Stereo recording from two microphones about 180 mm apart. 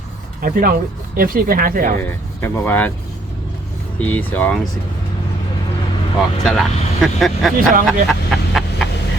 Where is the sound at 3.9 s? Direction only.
10° left (ahead or behind).